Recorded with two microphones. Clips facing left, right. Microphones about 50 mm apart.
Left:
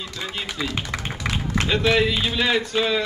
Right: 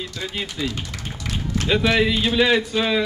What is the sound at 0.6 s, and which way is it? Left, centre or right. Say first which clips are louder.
Music: left 1 dB; left.